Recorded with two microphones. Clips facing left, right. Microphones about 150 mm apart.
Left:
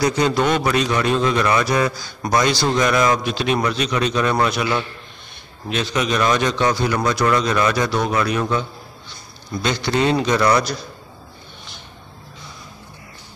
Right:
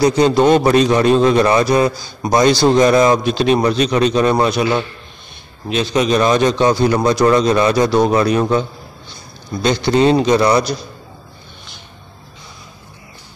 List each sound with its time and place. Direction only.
0.0 s a man's voice: 30° right (ahead or behind)